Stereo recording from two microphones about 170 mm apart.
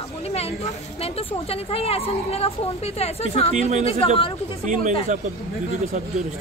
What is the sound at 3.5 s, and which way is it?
Speech, 45° right (ahead or behind).